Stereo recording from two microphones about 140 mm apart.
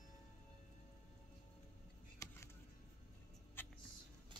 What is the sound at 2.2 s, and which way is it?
Music, 25° left (ahead or behind).